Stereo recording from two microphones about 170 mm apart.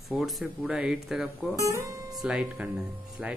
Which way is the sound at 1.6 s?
20° right (ahead or behind).